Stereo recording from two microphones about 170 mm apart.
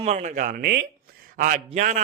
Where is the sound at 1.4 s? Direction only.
45° right (ahead or behind).